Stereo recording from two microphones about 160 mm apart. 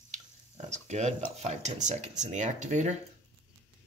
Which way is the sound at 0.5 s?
45° right (ahead or behind).